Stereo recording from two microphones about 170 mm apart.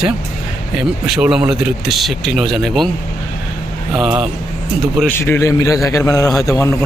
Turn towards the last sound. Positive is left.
turn(degrees=20)  # may be behind; listen again after turning